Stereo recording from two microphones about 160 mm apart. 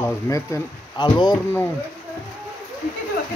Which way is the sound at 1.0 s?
30° left (ahead or behind).